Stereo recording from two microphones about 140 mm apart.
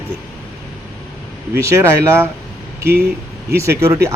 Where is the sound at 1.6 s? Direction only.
20° right (ahead or behind).